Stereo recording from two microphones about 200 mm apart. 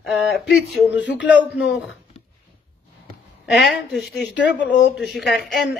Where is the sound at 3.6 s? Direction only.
Centre (ahead or behind).